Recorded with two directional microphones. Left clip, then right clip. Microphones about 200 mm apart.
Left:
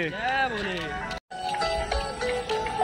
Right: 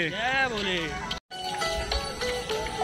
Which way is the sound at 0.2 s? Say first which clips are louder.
Even; 15° right (ahead or behind).